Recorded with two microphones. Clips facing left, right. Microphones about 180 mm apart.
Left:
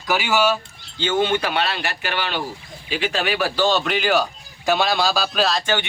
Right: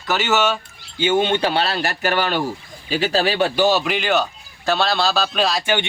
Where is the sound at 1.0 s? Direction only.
15° right (ahead or behind); by 3.5 s 30° right (ahead or behind).